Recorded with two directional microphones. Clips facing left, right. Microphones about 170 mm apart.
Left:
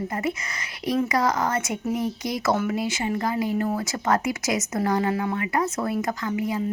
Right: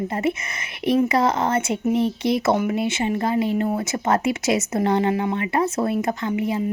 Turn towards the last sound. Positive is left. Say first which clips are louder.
# right 3 dB
turn(degrees=-25)  # may be behind; listen again after turning